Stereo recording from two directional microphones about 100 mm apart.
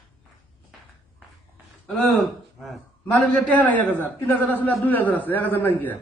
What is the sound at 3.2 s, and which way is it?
A man's voice, 10° left (ahead or behind).